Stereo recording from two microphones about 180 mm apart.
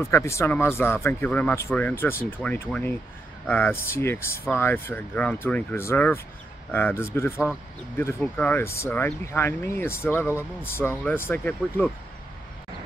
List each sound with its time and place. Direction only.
0.0 s speech: 15° left (ahead or behind)